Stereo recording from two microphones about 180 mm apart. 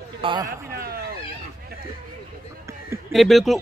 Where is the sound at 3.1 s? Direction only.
Centre (ahead or behind).